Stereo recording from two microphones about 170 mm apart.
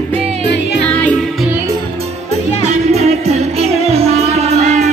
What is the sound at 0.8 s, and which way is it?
Music, 5° left (ahead or behind).